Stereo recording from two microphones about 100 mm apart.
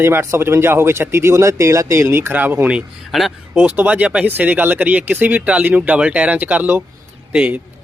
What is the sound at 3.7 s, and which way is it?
A man's voice, 15° right (ahead or behind).